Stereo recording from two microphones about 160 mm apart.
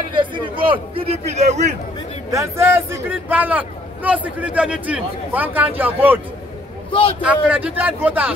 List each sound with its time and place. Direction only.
0.1 s a man's voice: 30° right (ahead or behind)
2.3 s a man's voice: 15° right (ahead or behind)
6.9 s a man's voice: 35° left (ahead or behind)
7.4 s a man's voice: 10° right (ahead or behind)